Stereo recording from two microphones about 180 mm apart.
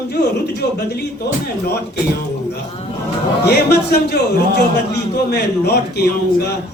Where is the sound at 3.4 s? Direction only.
65° left (ahead or behind).